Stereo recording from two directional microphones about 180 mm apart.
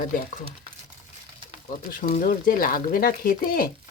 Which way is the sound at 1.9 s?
45° left (ahead or behind).